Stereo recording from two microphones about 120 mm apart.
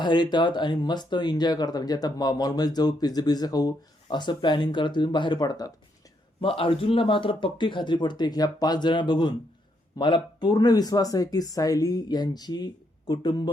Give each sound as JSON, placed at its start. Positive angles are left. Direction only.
{"t": 0.0, "sound": "speech", "side_deg": 40}
{"t": 6.4, "sound": "speech", "side_deg": 50}